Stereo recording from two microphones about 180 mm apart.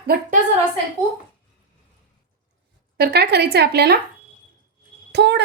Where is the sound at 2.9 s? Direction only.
65° right (ahead or behind).